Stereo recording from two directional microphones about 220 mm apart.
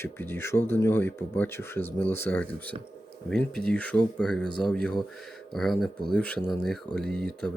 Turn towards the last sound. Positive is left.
turn(degrees=5)  # may be behind; listen again after turning